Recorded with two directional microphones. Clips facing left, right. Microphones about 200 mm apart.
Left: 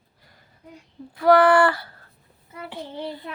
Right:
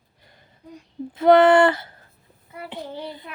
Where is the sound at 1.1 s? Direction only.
20° right (ahead or behind).